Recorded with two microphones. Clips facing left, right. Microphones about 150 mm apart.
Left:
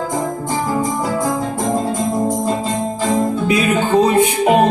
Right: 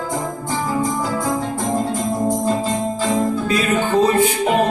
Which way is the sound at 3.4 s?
20° left (ahead or behind).